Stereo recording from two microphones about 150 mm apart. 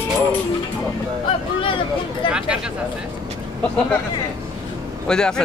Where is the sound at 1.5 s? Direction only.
35° left (ahead or behind).